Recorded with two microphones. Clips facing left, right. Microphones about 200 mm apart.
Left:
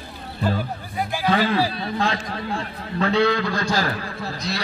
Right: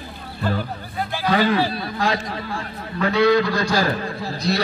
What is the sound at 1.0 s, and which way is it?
Speech, 10° left (ahead or behind).